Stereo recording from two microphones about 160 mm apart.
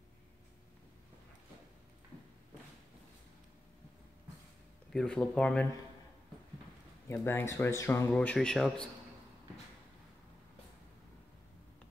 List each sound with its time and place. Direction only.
4.9 s a man's voice: 5° left (ahead or behind)
7.1 s a man's voice: 15° left (ahead or behind)